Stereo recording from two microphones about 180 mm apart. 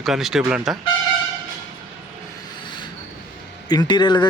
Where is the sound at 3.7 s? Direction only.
25° left (ahead or behind).